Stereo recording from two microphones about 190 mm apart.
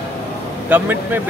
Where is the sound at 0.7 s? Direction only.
10° right (ahead or behind).